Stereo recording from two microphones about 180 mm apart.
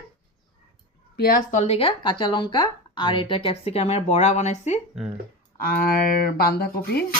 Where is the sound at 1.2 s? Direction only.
55° left (ahead or behind).